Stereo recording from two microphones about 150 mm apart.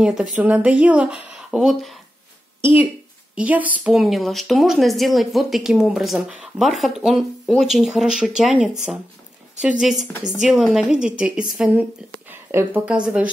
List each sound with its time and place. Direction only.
0.0 s a woman's voice: 5° right (ahead or behind)
12.3 s speech: 15° right (ahead or behind)